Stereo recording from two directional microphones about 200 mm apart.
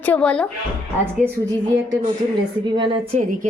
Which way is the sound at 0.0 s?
5° left (ahead or behind).